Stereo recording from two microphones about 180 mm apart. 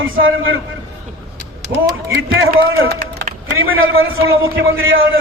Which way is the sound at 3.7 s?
90° right.